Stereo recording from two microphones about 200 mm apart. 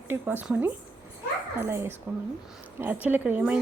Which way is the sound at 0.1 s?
10° right (ahead or behind).